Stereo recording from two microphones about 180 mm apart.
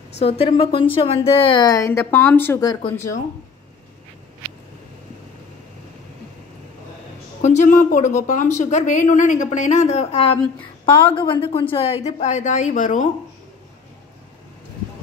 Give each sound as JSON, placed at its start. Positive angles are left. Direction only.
{"t": 0.2, "sound": "a woman's voice", "side_deg": 35}
{"t": 7.4, "sound": "a woman's voice", "side_deg": 45}